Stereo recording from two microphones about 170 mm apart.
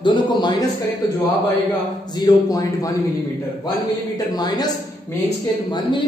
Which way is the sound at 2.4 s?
20° left (ahead or behind).